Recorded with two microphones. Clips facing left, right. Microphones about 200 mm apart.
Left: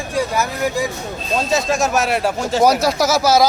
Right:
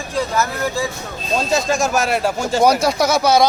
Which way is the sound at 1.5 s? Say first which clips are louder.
Even; centre (ahead or behind).